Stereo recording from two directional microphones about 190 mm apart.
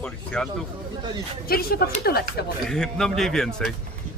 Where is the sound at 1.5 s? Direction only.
50° left (ahead or behind).